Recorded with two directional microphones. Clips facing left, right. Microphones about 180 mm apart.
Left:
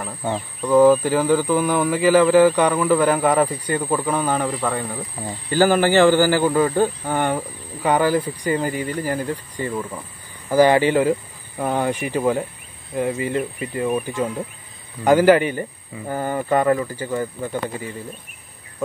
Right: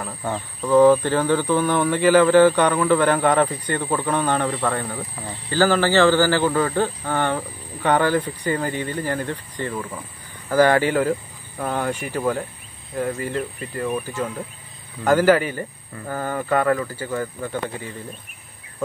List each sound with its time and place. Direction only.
0.0 s speech: 10° left (ahead or behind)
5.2 s speech: 15° left (ahead or behind)